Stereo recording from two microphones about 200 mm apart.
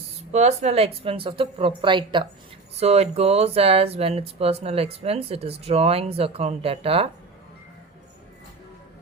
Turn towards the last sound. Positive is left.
turn(degrees=-30)  # may be behind; listen again after turning